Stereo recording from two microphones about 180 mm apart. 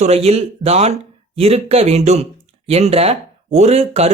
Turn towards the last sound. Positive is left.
turn(degrees=-35)  # may be behind; listen again after turning